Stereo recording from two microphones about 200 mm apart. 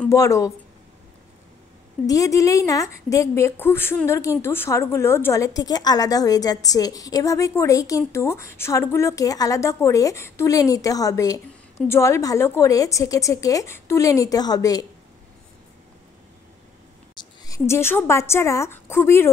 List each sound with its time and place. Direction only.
0.0 s speech: 15° left (ahead or behind)
2.0 s a woman's voice: 15° left (ahead or behind)
17.1 s speech: 20° left (ahead or behind)